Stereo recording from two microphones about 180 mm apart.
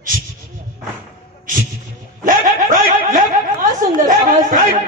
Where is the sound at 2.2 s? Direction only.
45° right (ahead or behind).